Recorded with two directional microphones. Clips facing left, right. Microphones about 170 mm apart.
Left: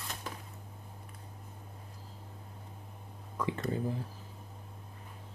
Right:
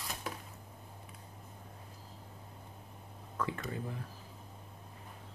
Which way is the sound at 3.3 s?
20° left (ahead or behind).